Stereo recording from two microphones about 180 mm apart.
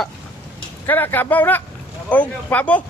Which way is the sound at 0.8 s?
10° left (ahead or behind).